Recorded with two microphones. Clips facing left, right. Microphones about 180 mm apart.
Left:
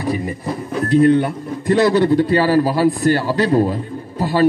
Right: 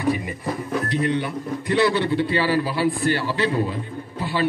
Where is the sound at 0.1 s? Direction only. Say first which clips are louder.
Left 3 dB; 40° left (ahead or behind).